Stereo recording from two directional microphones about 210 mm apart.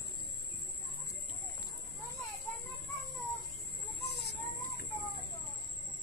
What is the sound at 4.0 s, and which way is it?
Chicken, 50° left (ahead or behind).